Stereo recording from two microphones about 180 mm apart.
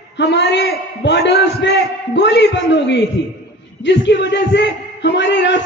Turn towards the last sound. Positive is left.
turn(degrees=80)